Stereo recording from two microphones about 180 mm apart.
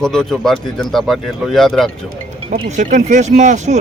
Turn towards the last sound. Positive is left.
turn(degrees=-40)  # may be behind; listen again after turning